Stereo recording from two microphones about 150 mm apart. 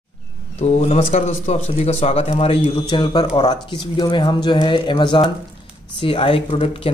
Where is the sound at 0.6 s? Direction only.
45° left (ahead or behind).